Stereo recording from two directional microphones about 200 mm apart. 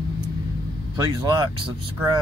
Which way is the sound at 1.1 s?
25° right (ahead or behind).